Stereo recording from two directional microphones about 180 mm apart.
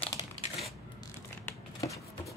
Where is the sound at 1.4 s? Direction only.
15° left (ahead or behind).